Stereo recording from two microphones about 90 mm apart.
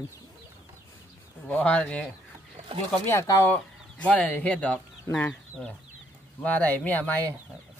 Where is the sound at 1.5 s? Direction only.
15° left (ahead or behind).